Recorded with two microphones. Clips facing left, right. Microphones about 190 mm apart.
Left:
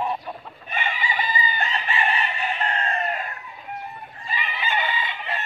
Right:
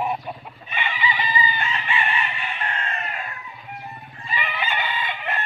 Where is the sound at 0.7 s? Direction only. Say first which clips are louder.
Right 1 dB; 45° left (ahead or behind).